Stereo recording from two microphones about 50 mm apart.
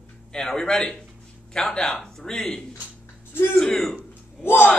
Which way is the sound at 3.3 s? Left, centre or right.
Left.